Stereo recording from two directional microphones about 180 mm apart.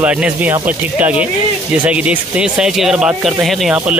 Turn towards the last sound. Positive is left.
turn(degrees=-5)  # may be behind; listen again after turning